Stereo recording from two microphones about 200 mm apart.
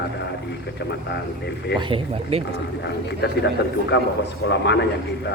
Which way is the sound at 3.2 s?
60° left (ahead or behind).